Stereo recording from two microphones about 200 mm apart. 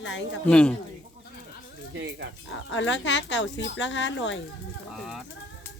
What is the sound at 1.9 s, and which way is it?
Speech, 65° right (ahead or behind).